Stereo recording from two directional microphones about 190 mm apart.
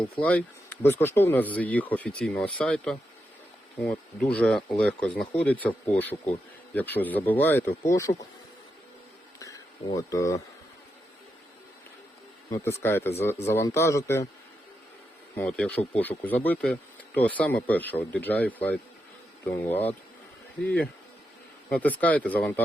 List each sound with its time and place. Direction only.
0.2 s speech: 10° left (ahead or behind)
9.4 s a sound: 15° left (ahead or behind)
12.5 s speech: 15° left (ahead or behind)
15.4 s speech: 5° left (ahead or behind)
21.7 s speech: 10° left (ahead or behind)